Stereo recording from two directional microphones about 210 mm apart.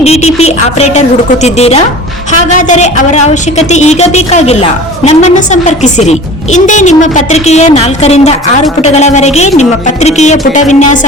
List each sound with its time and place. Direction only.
0.0 s a woman's voice: 30° left (ahead or behind)